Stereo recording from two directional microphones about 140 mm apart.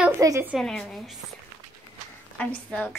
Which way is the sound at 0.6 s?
Centre (ahead or behind).